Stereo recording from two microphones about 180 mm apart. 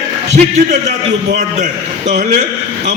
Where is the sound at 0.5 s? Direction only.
40° right (ahead or behind).